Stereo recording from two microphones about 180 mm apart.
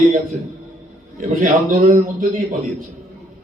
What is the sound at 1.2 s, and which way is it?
A man's voice, 45° right (ahead or behind).